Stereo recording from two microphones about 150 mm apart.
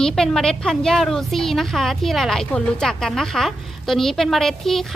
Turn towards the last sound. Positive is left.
turn(degrees=0)  # may be behind; listen again after turning